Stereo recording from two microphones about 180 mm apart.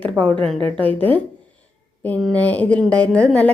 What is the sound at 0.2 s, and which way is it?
A woman's voice, 5° left (ahead or behind).